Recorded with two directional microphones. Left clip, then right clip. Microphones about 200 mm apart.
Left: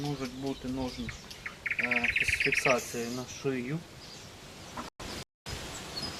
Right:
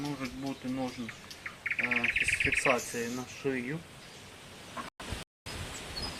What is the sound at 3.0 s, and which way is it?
Speech, 25° left (ahead or behind).